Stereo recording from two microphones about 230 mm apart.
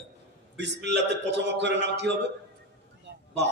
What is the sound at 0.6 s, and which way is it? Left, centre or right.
Speech, right.